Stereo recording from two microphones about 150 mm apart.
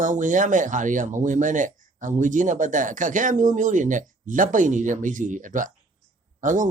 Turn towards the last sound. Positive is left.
turn(degrees=-60)  # may be behind; listen again after turning